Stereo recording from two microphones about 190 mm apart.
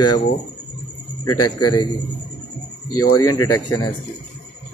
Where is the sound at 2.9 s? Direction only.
20° left (ahead or behind).